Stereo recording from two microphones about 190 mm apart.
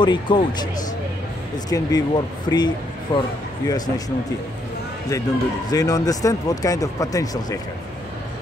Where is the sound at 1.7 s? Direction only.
20° left (ahead or behind).